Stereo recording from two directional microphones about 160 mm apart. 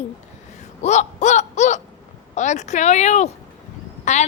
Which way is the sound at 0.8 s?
45° left (ahead or behind).